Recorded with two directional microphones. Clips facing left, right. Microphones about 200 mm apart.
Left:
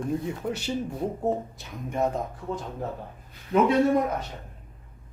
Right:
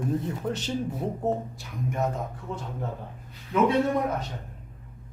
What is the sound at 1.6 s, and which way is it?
Speech, 20° left (ahead or behind).